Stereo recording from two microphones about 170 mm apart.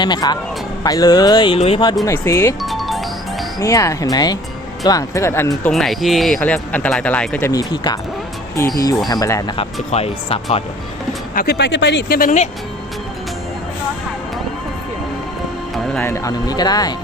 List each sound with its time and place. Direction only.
0.0 s speech: 25° left (ahead or behind)
2.0 s speech: 15° left (ahead or behind)
2.6 s music: centre (ahead or behind)
3.6 s speech: 20° left (ahead or behind)
5.7 s speech: centre (ahead or behind)
7.5 s speech: 25° left (ahead or behind)
9.0 s speech: 20° left (ahead or behind)
9.9 s speech: 35° left (ahead or behind)
11.3 s speech: 70° left (ahead or behind)
16.0 s speech: 15° left (ahead or behind)